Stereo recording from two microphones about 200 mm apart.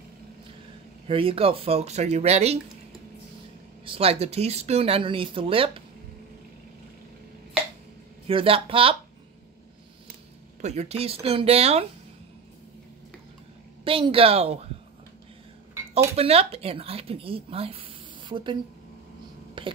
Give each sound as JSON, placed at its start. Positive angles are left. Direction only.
{"t": 1.0, "sound": "speech", "side_deg": -25}
{"t": 3.8, "sound": "speech", "side_deg": -25}
{"t": 8.3, "sound": "speech", "side_deg": -25}
{"t": 10.6, "sound": "speech", "side_deg": -30}
{"t": 13.8, "sound": "speech", "side_deg": -25}
{"t": 15.9, "sound": "speech", "side_deg": -30}
{"t": 19.6, "sound": "a sound", "side_deg": -25}